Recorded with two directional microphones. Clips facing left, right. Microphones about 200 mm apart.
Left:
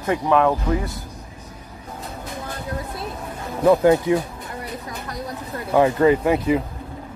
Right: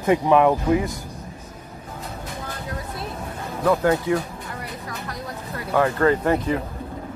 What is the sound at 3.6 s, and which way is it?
Speech, 20° left (ahead or behind).